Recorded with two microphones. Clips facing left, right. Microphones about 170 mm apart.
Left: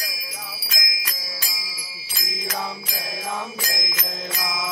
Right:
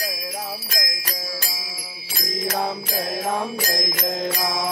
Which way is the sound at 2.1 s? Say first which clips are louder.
Right 6 dB; 60° right (ahead or behind).